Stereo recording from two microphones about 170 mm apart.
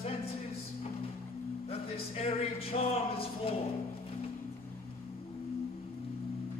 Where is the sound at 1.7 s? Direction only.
35° left (ahead or behind).